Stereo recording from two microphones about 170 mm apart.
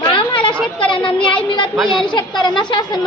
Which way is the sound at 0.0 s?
30° left (ahead or behind).